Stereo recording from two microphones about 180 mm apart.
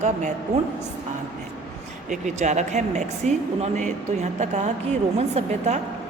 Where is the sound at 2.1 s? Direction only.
40° right (ahead or behind).